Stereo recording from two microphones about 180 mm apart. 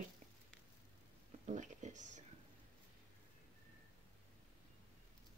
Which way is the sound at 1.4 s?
40° right (ahead or behind).